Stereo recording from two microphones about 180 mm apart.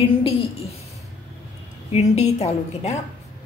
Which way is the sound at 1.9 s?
35° left (ahead or behind).